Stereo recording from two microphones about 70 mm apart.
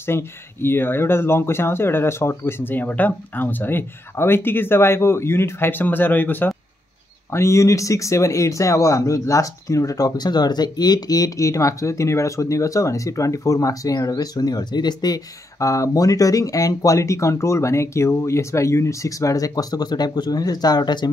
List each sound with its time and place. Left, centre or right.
0.0 s speech: left
7.2 s speech: left
15.6 s speech: left